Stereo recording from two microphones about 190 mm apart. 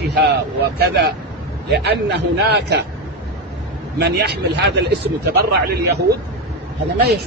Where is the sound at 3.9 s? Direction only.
60° right (ahead or behind).